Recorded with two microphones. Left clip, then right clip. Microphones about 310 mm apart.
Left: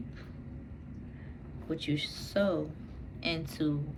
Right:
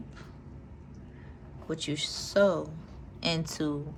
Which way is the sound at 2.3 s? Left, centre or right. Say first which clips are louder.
Right 6 dB; centre.